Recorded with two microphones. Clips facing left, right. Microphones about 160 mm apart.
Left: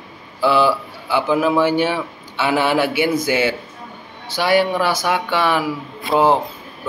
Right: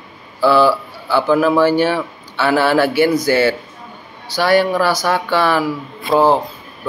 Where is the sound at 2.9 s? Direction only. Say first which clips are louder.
Right 4 dB; 40° right (ahead or behind).